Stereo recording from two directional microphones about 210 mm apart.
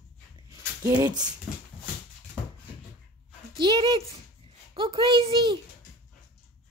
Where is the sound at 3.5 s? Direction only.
20° right (ahead or behind).